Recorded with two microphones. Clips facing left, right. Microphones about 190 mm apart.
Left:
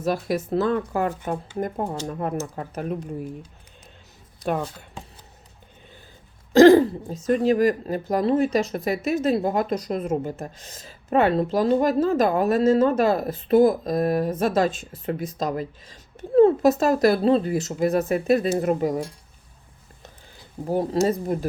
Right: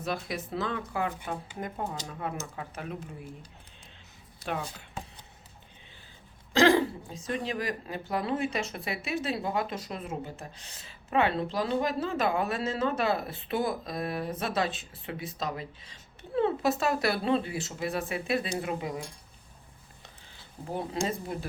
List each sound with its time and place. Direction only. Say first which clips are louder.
0.0 s speech: left 9 dB; 45° left (ahead or behind)
4.4 s speech: left 8 dB; 45° left (ahead or behind)
6.5 s speech: left 10 dB; 40° left (ahead or behind)
20.7 s speech: left 10 dB; 40° left (ahead or behind)